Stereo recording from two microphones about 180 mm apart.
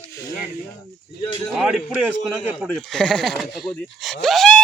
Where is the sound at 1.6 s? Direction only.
5° right (ahead or behind).